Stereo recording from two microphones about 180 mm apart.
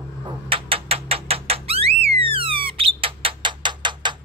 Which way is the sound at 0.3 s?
30° right (ahead or behind).